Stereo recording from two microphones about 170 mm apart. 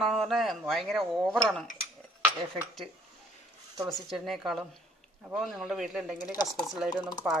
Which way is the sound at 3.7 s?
Centre (ahead or behind).